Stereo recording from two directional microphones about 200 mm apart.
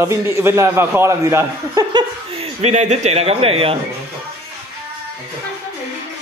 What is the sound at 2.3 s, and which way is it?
Speech, 30° right (ahead or behind).